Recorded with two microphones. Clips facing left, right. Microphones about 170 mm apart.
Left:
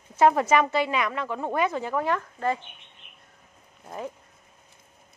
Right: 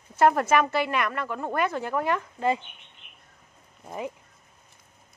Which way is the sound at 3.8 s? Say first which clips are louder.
Right 1 dB; 10° right (ahead or behind).